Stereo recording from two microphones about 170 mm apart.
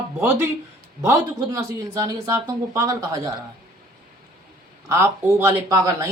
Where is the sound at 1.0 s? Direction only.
20° right (ahead or behind).